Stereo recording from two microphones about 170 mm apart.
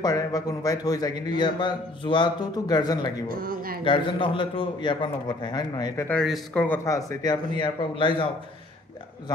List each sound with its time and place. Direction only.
0.0 s speech: 20° left (ahead or behind)
3.3 s speech: 60° right (ahead or behind)
3.8 s speech: 30° left (ahead or behind)
6.0 s speech: centre (ahead or behind); by 8.3 s 30° left (ahead or behind)